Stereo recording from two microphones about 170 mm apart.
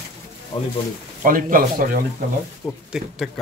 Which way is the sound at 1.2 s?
55° right (ahead or behind).